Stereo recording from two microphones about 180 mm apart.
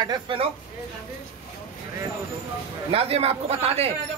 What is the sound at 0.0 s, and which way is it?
Speech, 25° right (ahead or behind).